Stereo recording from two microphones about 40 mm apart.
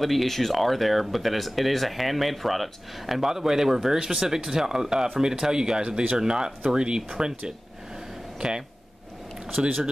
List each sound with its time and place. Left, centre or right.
0.0 s speech: centre; by 9.7 s right